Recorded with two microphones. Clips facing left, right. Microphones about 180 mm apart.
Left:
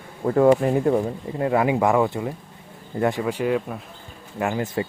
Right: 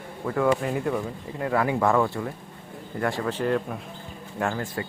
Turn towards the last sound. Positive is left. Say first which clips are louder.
# left 3 dB
turn(degrees=10)  # may be behind; listen again after turning